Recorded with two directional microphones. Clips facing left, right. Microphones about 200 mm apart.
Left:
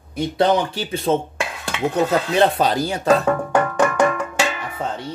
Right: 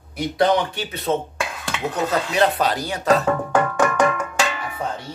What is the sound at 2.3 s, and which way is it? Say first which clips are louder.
Speech: left 2 dB; 30° left (ahead or behind).